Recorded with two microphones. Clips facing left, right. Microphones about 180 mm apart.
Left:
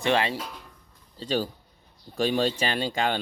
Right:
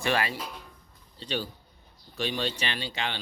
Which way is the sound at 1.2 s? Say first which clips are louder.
Left 6 dB; 40° left (ahead or behind).